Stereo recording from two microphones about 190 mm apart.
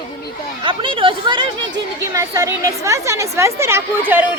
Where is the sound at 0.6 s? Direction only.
25° right (ahead or behind); by 4.2 s 10° right (ahead or behind).